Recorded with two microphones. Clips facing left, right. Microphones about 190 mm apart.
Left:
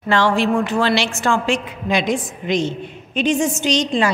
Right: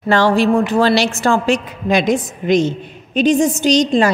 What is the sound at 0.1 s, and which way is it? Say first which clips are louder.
A woman's voice: right 4 dB; 40° right (ahead or behind).